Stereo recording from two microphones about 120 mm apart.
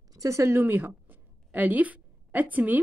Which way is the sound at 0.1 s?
25° right (ahead or behind).